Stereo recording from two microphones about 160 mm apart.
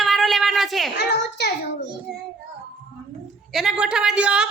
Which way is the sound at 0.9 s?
90° left.